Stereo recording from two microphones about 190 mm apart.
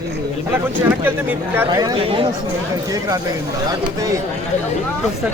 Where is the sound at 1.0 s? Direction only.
10° right (ahead or behind).